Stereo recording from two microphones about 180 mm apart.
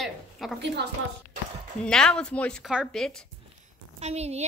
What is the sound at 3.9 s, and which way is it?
Speech, 35° right (ahead or behind).